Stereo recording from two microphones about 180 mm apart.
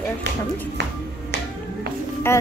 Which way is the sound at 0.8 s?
70° right (ahead or behind).